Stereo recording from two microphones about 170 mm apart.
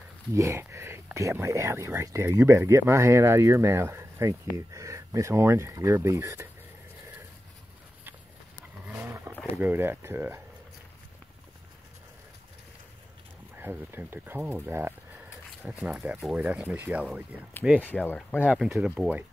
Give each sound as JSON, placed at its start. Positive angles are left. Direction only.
{"t": 0.3, "sound": "speech", "side_deg": -15}
{"t": 8.8, "sound": "roaring cats", "side_deg": -10}
{"t": 9.6, "sound": "speech", "side_deg": -10}
{"t": 13.6, "sound": "speech", "side_deg": -10}
{"t": 17.7, "sound": "speech", "side_deg": 10}
{"t": 18.8, "sound": "speech", "side_deg": -5}